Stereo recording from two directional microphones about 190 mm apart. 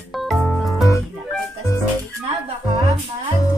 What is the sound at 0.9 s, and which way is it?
Music, 15° left (ahead or behind).